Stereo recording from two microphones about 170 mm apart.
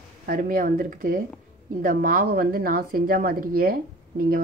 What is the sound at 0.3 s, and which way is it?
A woman's voice, 55° right (ahead or behind).